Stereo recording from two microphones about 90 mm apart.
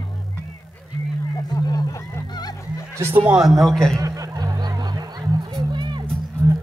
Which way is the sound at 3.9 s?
40° right (ahead or behind).